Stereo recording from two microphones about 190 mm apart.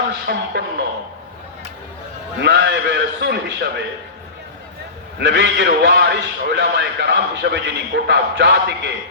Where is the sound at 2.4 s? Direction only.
65° right (ahead or behind).